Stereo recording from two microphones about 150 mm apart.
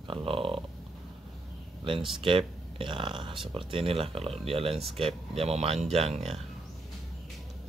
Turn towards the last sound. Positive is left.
turn(degrees=-45)  # may be behind; listen again after turning